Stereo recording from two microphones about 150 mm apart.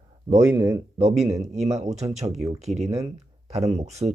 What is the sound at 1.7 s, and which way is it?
Speech, 45° right (ahead or behind).